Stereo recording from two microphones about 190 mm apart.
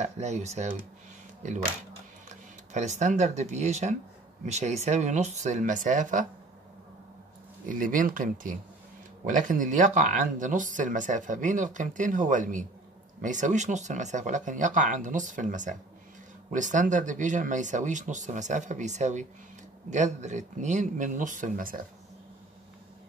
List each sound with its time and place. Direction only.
0.0 s speech: 35° right (ahead or behind)
2.2 s speech: 40° right (ahead or behind)
7.6 s speech: 45° right (ahead or behind)